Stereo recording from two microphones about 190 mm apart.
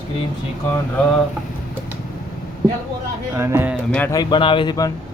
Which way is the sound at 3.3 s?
10° right (ahead or behind).